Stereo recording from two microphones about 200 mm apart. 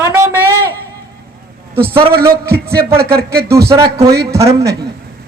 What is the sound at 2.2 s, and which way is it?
Speech, 50° right (ahead or behind).